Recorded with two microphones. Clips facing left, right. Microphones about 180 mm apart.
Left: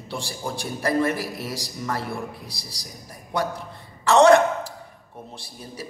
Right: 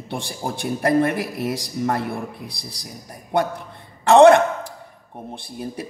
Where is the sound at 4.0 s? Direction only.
55° right (ahead or behind).